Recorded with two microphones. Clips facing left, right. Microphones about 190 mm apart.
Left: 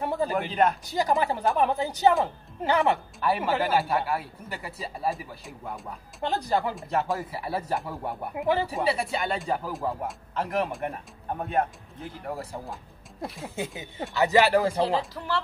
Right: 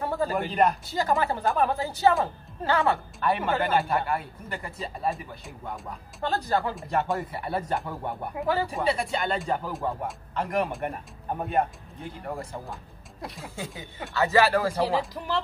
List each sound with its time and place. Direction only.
0.3 s speech: centre (ahead or behind)
0.8 s speech: 15° left (ahead or behind)
3.2 s speech: 5° left (ahead or behind)
6.2 s speech: 15° left (ahead or behind)
6.7 s speech: centre (ahead or behind)
8.4 s speech: 15° left (ahead or behind)
8.6 s speech: 5° left (ahead or behind)
13.6 s speech: 20° left (ahead or behind)
15.1 s speech: 20° right (ahead or behind)